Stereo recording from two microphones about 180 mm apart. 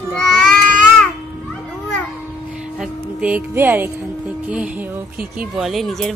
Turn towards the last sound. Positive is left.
turn(degrees=0)  # may be behind; listen again after turning